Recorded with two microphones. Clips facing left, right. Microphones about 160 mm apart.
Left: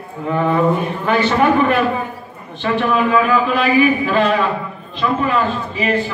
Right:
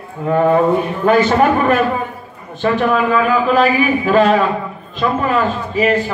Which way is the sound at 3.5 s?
45° right (ahead or behind).